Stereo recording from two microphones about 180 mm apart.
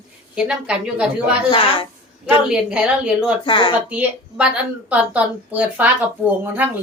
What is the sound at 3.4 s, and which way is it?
Speech, 25° left (ahead or behind).